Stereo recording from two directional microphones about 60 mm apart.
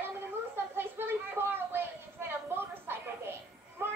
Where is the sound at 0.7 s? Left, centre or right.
Right.